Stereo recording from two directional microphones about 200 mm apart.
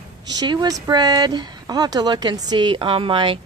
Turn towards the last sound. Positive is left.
turn(degrees=-25)  # may be behind; listen again after turning